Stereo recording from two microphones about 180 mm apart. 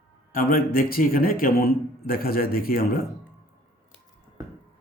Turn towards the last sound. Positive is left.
turn(degrees=55)  # may be behind; listen again after turning